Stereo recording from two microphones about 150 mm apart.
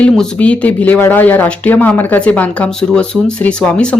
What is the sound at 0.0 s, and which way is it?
Speech, 5° left (ahead or behind).